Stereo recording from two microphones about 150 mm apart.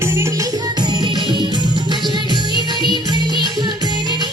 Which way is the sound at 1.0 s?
30° right (ahead or behind).